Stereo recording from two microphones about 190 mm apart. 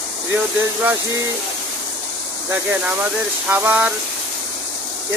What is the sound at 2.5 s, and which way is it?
Speech, 10° right (ahead or behind).